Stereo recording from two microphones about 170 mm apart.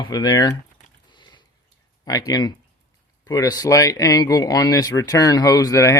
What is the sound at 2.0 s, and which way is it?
Speech, 20° left (ahead or behind).